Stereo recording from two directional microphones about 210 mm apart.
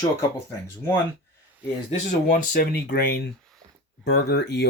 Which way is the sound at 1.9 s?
40° left (ahead or behind).